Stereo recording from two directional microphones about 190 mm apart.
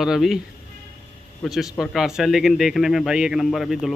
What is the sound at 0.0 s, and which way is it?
Speech, centre (ahead or behind).